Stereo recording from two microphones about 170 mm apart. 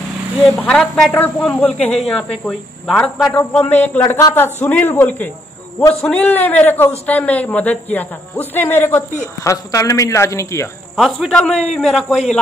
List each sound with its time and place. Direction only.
0.6 s a man's voice: 5° left (ahead or behind)
11.0 s speech: centre (ahead or behind)